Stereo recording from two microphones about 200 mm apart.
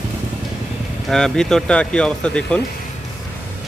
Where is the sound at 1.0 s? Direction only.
Centre (ahead or behind).